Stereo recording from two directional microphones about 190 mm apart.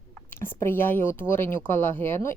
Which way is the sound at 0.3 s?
10° left (ahead or behind).